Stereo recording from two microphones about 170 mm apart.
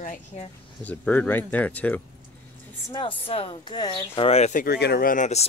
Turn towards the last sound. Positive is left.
turn(degrees=40)  # may be behind; listen again after turning